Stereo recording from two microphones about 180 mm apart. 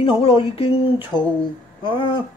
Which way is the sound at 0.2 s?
30° left (ahead or behind).